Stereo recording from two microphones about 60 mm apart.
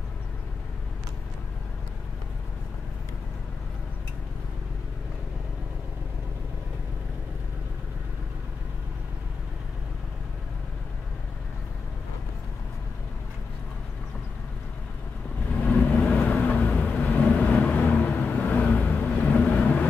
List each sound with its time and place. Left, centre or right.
15.5 s vehicle: left